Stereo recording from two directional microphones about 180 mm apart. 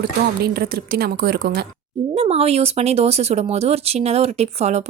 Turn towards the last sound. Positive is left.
turn(degrees=-35)  # may be behind; listen again after turning